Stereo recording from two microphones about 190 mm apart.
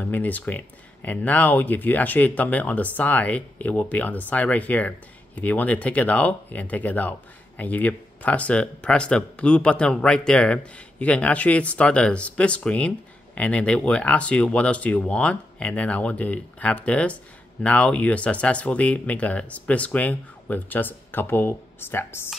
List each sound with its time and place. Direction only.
0.0 s speech: 10° left (ahead or behind)